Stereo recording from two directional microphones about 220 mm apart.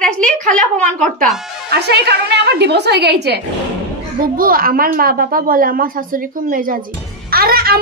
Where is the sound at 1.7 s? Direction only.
50° right (ahead or behind).